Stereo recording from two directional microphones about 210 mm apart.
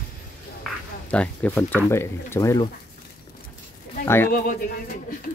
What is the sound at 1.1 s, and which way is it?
Speech, 5° left (ahead or behind).